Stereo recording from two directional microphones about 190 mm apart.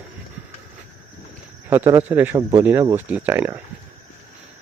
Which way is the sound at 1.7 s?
10° right (ahead or behind).